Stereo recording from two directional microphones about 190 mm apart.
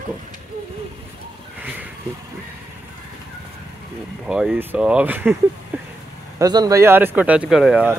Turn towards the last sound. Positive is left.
turn(degrees=-5)  # may be behind; listen again after turning